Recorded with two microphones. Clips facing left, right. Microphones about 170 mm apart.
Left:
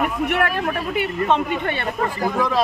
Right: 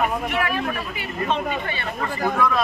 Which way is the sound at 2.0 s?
30° left (ahead or behind).